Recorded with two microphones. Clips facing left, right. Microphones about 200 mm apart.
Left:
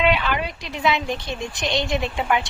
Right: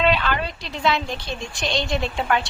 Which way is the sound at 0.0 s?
10° left (ahead or behind).